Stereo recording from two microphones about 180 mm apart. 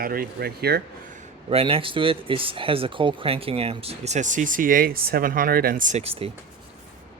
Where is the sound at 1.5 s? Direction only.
30° right (ahead or behind).